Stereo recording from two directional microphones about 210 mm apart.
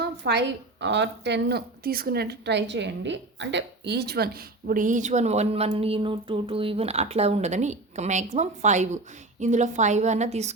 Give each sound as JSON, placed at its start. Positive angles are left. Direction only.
{"t": 0.0, "sound": "a woman's voice", "side_deg": -55}